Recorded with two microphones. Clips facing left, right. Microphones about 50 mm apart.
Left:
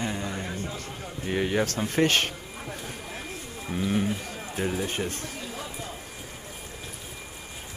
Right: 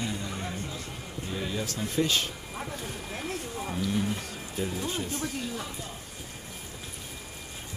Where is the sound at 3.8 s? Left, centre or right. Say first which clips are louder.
Left 4 dB; left.